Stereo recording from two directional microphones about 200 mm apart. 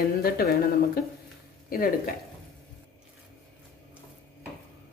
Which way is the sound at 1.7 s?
45° left (ahead or behind).